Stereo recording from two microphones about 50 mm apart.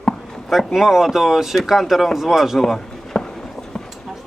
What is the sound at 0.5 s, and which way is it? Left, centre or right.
Speech, centre.